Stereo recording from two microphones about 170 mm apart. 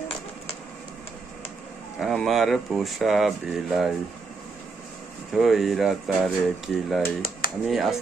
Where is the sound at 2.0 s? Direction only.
Centre (ahead or behind).